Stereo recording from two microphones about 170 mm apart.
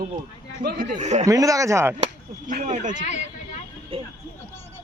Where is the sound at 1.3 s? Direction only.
20° right (ahead or behind).